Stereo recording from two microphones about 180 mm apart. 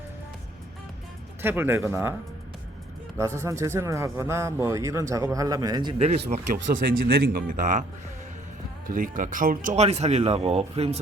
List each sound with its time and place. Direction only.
1.4 s speech: 10° right (ahead or behind)
3.2 s speech: 15° right (ahead or behind); by 6.2 s 35° right (ahead or behind)
6.5 s speech: 45° right (ahead or behind)
6.9 s speech: 65° right (ahead or behind); by 7.9 s 45° right (ahead or behind)
8.9 s speech: 50° right (ahead or behind)
9.7 s speech: 35° right (ahead or behind)